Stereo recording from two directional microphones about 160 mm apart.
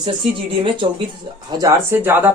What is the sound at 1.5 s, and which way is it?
Speech, 20° right (ahead or behind).